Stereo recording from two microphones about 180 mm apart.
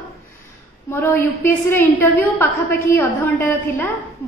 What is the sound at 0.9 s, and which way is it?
A woman's voice, 10° left (ahead or behind).